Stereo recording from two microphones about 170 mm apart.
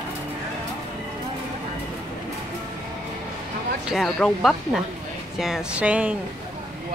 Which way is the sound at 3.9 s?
Centre (ahead or behind).